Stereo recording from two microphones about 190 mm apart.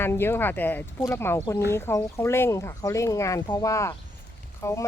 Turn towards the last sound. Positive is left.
turn(degrees=15)  # may be behind; listen again after turning